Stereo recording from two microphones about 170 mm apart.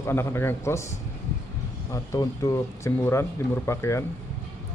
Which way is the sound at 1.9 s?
20° left (ahead or behind).